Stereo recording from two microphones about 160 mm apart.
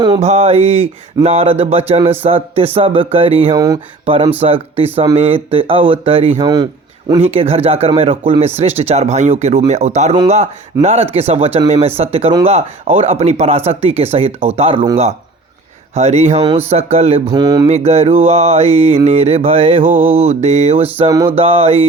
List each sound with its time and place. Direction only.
0.2 s speech: 40° right (ahead or behind)
16.0 s mantra: 40° right (ahead or behind)
16.6 s speech: 40° right (ahead or behind)
17.3 s speech: 25° right (ahead or behind)
17.7 s speech: 40° right (ahead or behind)
20.1 s mantra: 45° right (ahead or behind)
21.2 s speech: 40° right (ahead or behind)